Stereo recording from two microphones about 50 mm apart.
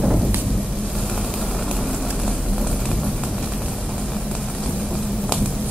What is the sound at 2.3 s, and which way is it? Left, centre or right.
Clip-clop, centre.